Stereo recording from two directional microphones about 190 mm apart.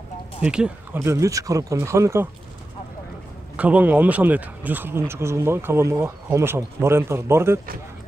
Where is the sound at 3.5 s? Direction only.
5° right (ahead or behind).